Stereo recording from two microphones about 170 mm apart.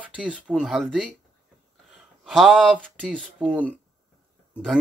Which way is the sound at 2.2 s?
Centre (ahead or behind).